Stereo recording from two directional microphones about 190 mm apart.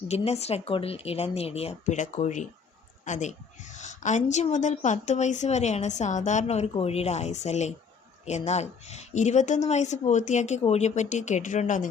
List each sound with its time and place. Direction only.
0.1 s a woman's voice: 35° left (ahead or behind)